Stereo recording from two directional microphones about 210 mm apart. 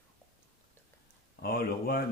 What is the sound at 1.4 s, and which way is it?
Speech, 45° left (ahead or behind).